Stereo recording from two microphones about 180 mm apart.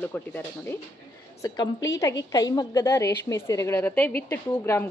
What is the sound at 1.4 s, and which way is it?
A woman's voice, 20° left (ahead or behind).